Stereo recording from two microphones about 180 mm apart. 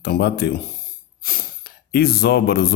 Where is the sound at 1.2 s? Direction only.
50° left (ahead or behind).